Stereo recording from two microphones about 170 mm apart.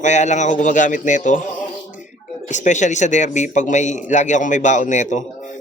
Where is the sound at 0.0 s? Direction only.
45° left (ahead or behind).